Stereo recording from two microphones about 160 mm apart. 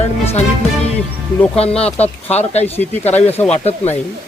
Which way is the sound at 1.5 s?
40° left (ahead or behind).